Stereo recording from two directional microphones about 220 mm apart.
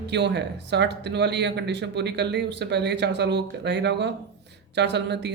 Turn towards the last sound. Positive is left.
turn(degrees=-50)  # may be behind; listen again after turning